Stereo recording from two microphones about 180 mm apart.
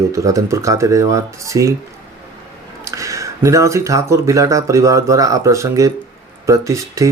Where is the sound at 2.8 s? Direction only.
15° right (ahead or behind).